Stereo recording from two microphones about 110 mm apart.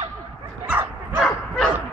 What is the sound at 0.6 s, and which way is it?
Bow-wow, 15° right (ahead or behind).